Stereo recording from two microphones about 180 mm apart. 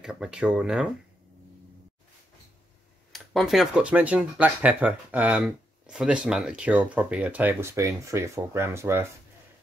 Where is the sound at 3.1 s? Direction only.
Centre (ahead or behind).